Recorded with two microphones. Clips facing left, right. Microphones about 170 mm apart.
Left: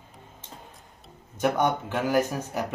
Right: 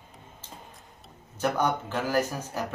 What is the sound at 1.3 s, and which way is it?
Speech, 20° left (ahead or behind).